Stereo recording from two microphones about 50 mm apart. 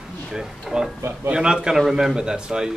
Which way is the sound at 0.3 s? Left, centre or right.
Centre.